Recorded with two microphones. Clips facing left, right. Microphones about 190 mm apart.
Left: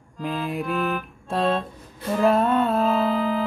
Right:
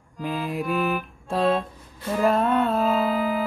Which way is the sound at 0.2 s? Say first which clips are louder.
Even; centre (ahead or behind).